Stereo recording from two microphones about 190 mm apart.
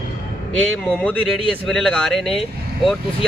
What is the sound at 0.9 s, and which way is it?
Speech, 5° left (ahead or behind).